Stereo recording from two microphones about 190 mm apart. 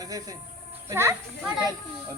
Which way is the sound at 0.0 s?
20° right (ahead or behind).